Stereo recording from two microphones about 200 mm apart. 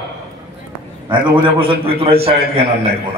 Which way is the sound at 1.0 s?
25° right (ahead or behind).